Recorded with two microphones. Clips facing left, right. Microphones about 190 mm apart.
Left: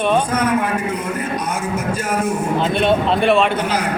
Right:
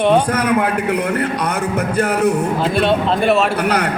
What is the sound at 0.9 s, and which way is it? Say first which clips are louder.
A man's voice: right 4 dB; 65° right (ahead or behind).